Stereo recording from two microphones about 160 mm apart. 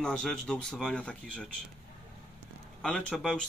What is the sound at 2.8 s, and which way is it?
Speech, 5° left (ahead or behind).